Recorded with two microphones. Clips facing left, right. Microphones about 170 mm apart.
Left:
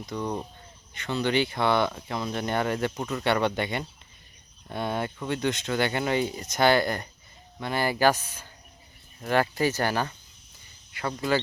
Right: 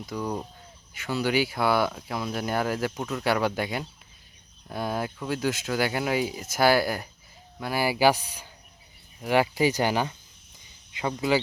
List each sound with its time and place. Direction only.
0.0 s speech: 5° right (ahead or behind)